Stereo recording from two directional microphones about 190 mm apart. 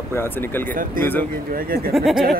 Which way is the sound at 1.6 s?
50° right (ahead or behind).